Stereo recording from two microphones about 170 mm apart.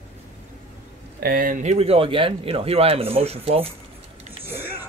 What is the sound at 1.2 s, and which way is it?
Speech, 60° right (ahead or behind).